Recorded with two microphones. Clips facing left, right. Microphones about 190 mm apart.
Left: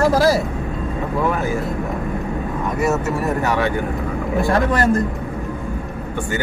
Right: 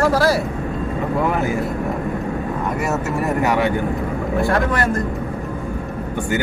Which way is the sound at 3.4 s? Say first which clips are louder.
Right 3 dB; 15° right (ahead or behind).